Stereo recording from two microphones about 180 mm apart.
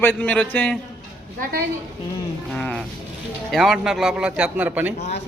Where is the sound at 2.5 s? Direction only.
5° left (ahead or behind).